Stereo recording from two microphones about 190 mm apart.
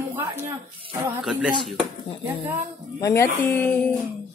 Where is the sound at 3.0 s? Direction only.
15° left (ahead or behind).